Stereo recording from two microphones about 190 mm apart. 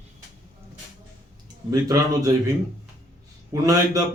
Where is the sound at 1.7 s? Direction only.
20° right (ahead or behind).